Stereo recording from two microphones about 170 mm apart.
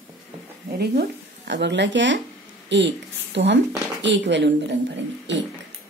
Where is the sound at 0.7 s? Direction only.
70° right (ahead or behind); by 5.4 s 90° right.